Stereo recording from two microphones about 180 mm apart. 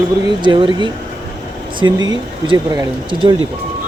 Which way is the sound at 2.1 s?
25° right (ahead or behind).